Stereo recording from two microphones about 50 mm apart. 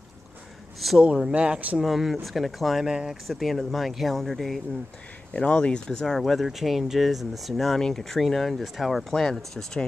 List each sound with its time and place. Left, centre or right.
1.0 s speech: centre
1.8 s speech: centre
2.9 s speech: centre
3.3 s speech: centre
5.3 s speech: left